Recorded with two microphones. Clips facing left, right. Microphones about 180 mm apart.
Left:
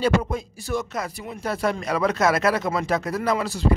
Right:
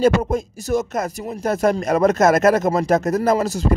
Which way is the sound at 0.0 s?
45° right (ahead or behind).